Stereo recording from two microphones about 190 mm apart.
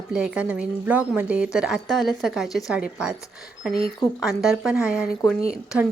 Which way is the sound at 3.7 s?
55° left (ahead or behind).